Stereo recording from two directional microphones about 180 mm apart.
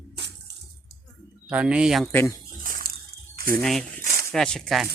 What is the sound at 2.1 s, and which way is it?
Speech, 10° left (ahead or behind).